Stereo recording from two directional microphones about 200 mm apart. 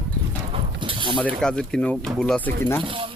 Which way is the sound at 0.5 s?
25° right (ahead or behind).